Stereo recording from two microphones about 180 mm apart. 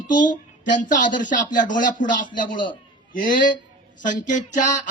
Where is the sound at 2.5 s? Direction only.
25° left (ahead or behind).